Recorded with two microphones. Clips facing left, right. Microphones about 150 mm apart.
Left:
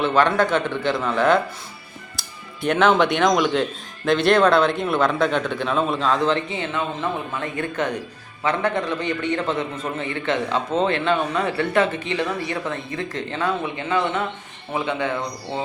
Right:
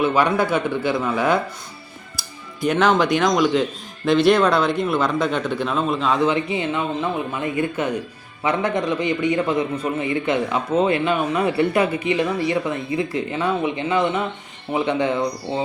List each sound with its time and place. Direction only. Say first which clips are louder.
0.0 s a man's voice: even; 10° right (ahead or behind)
2.6 s a man's voice: even; centre (ahead or behind); by 15.2 s 15° right (ahead or behind)